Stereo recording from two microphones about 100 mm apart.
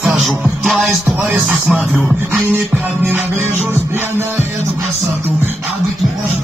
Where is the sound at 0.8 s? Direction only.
15° right (ahead or behind).